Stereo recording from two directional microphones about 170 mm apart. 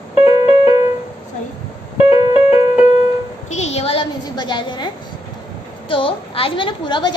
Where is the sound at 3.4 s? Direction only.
40° left (ahead or behind).